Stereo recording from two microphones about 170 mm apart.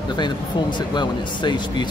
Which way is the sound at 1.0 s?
25° left (ahead or behind).